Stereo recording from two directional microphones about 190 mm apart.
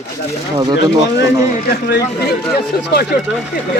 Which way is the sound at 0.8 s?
65° left (ahead or behind).